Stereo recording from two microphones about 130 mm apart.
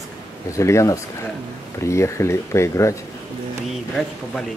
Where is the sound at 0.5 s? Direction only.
25° left (ahead or behind).